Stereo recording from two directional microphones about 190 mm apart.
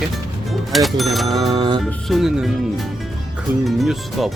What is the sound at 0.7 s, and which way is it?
Speech, centre (ahead or behind).